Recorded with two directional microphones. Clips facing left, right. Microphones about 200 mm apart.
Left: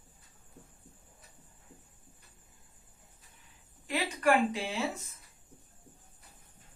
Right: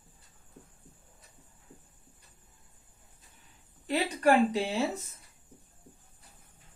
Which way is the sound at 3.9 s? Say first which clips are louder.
Right 3 dB; 35° right (ahead or behind).